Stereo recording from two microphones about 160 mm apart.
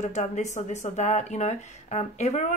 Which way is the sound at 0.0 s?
45° left (ahead or behind).